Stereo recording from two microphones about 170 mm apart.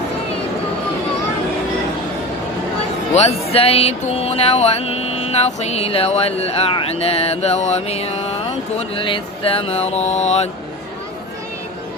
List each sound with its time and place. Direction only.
3.2 s music: 35° left (ahead or behind)